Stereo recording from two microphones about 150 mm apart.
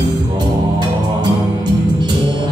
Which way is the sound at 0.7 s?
30° right (ahead or behind).